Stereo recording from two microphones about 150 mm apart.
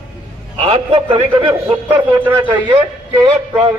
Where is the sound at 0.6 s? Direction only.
40° right (ahead or behind).